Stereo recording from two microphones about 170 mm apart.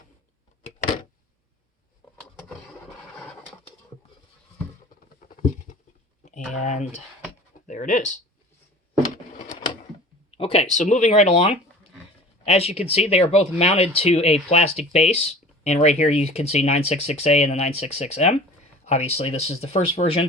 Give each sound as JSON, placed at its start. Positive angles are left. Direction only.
{"t": 5.2, "sound": "patter", "side_deg": 50}
{"t": 6.6, "sound": "speech", "side_deg": 45}
{"t": 10.3, "sound": "speech", "side_deg": 35}